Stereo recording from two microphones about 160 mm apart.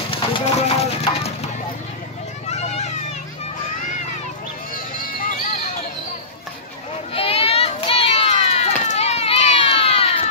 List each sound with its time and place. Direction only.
0.1 s speech: 35° left (ahead or behind)
2.4 s children playing: 45° left (ahead or behind)
4.9 s a sound: 60° left (ahead or behind)
7.2 s children playing: 35° left (ahead or behind)